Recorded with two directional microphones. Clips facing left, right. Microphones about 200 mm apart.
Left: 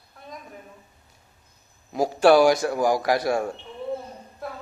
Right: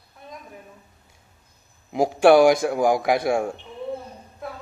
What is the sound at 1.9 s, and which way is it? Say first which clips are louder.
A man's voice: right 2 dB; 20° right (ahead or behind).